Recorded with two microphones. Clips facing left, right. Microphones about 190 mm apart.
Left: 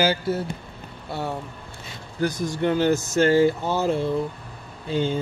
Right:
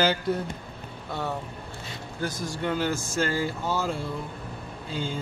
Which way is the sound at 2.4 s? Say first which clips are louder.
Left 6 dB; 20° left (ahead or behind).